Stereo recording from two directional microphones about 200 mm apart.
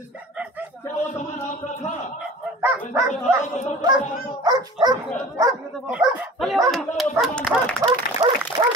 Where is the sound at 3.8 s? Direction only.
20° right (ahead or behind); by 7.7 s centre (ahead or behind).